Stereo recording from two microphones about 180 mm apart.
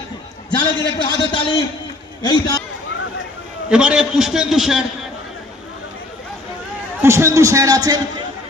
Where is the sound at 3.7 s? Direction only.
5° right (ahead or behind).